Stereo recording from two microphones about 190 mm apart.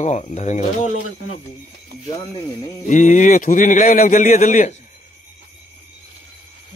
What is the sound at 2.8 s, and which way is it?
A man's voice, 40° left (ahead or behind).